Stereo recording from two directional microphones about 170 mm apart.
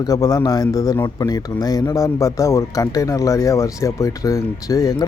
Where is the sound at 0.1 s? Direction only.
20° left (ahead or behind).